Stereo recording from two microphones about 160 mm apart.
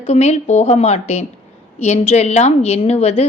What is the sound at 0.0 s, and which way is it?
A woman's voice, 40° left (ahead or behind).